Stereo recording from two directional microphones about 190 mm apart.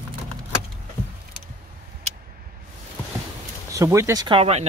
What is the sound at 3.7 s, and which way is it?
Speech, 15° right (ahead or behind).